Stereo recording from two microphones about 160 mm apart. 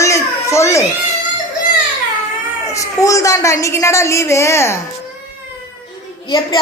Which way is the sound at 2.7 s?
20° left (ahead or behind).